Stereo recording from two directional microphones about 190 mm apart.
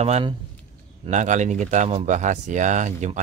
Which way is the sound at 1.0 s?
40° right (ahead or behind).